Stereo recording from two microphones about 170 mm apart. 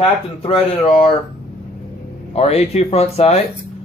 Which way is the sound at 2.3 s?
40° left (ahead or behind).